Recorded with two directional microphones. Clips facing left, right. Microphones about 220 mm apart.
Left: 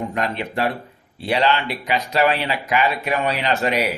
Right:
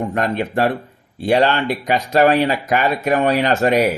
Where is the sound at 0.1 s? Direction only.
50° right (ahead or behind).